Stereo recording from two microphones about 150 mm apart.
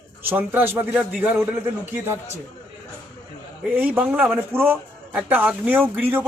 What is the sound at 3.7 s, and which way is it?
Speech, 10° right (ahead or behind).